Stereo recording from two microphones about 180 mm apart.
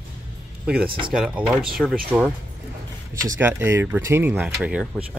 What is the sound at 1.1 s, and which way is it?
Speech, 5° right (ahead or behind).